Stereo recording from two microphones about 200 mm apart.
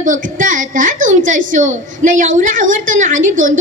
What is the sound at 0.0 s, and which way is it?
A woman's voice, 40° right (ahead or behind).